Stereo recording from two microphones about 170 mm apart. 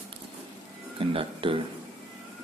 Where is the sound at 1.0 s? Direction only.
30° right (ahead or behind).